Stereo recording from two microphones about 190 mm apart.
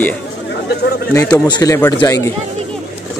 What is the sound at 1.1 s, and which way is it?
A man's voice, 20° left (ahead or behind).